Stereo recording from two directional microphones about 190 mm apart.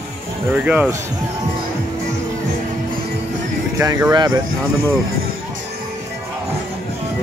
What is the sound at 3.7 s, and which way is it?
Speech, 20° right (ahead or behind).